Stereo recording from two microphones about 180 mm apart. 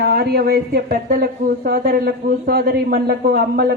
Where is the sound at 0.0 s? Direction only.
65° right (ahead or behind).